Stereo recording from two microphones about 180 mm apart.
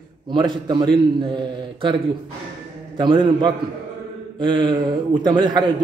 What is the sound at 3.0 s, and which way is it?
A man's voice, 25° right (ahead or behind).